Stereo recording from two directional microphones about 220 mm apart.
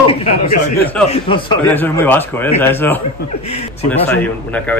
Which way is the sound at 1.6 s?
10° left (ahead or behind).